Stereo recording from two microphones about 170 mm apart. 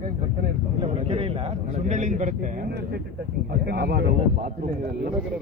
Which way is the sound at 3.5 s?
70° right (ahead or behind).